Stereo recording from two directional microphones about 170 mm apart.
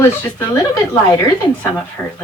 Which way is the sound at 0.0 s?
15° left (ahead or behind).